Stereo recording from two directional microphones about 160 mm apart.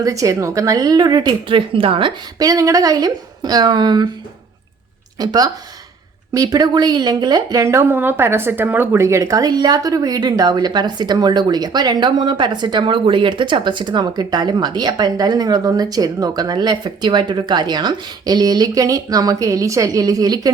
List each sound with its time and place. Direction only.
0.0 s a woman's voice: 20° right (ahead or behind)
5.1 s a woman's voice: 25° right (ahead or behind)